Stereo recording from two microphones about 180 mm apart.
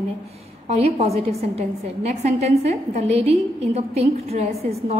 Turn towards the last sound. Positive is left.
turn(degrees=-35)  # may be behind; listen again after turning